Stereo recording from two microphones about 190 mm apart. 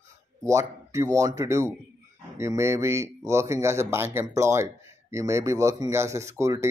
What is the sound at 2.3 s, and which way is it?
Speech, 15° right (ahead or behind).